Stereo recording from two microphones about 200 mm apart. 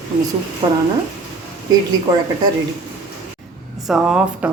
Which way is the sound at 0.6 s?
25° right (ahead or behind).